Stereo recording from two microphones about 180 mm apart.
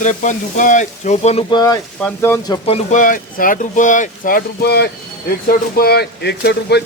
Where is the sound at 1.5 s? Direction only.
20° left (ahead or behind).